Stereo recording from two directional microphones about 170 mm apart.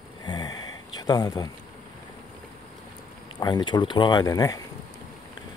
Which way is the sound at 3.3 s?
25° left (ahead or behind).